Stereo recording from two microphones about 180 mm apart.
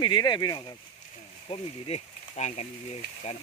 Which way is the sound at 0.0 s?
25° left (ahead or behind).